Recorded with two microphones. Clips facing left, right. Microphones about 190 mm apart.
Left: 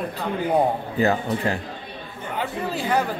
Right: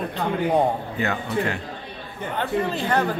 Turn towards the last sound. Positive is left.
turn(degrees=5)  # may be behind; listen again after turning